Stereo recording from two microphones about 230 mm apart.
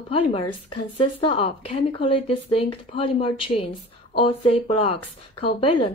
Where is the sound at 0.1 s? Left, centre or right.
Left.